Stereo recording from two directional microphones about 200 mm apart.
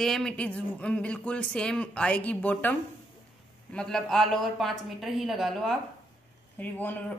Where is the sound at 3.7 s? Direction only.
5° left (ahead or behind).